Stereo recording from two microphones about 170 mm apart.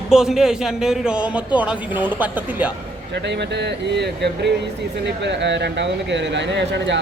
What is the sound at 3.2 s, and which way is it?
Speech, 85° right.